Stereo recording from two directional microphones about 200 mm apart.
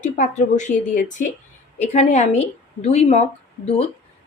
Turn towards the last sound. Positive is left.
turn(degrees=30)  # may be behind; listen again after turning